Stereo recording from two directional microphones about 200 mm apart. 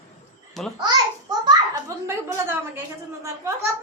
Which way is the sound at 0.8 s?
20° right (ahead or behind).